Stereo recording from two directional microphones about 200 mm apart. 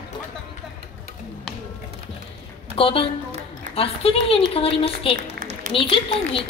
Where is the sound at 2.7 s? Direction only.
25° left (ahead or behind).